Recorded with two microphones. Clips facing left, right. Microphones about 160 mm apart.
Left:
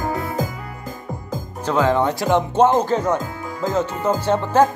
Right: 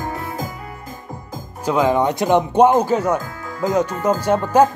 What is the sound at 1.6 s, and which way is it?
Speech, 10° right (ahead or behind).